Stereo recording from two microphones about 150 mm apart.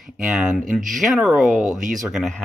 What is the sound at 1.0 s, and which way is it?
Speech, centre (ahead or behind).